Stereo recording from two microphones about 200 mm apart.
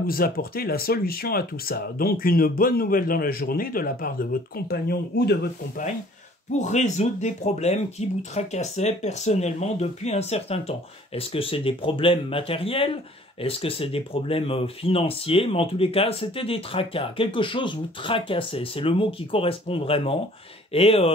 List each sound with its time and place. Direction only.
0.0 s speech: 45° left (ahead or behind)
6.6 s speech: 35° left (ahead or behind)